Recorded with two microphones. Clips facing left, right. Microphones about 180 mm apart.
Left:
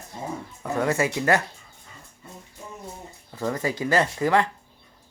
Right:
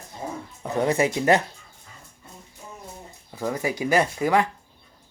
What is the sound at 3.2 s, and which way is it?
Speech, 10° right (ahead or behind).